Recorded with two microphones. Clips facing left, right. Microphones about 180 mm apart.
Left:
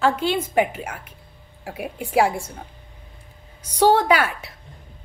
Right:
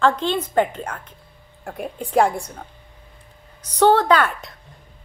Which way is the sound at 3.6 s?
10° left (ahead or behind).